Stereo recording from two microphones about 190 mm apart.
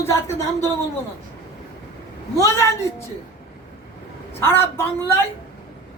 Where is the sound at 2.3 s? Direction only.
15° left (ahead or behind).